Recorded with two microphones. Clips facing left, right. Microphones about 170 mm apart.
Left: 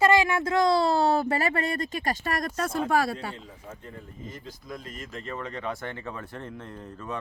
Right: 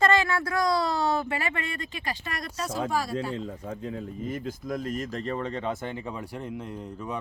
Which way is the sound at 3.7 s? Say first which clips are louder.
Right 5 dB; 90° right.